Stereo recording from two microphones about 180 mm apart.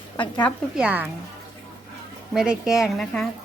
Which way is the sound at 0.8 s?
10° right (ahead or behind).